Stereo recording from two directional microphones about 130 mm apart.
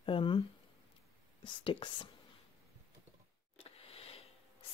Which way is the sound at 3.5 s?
50° left (ahead or behind).